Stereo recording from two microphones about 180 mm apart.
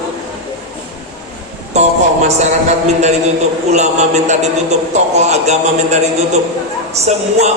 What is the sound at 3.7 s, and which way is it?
A man's voice, 40° right (ahead or behind).